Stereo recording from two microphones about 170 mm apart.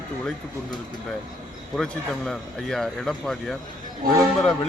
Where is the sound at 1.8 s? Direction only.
5° left (ahead or behind).